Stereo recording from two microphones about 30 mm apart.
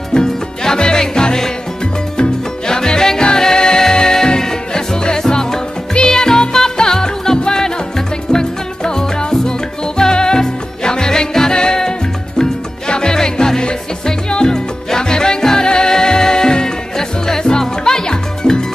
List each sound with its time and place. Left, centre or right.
0.1 s music: left